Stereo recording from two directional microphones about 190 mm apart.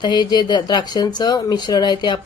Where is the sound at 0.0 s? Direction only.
25° left (ahead or behind).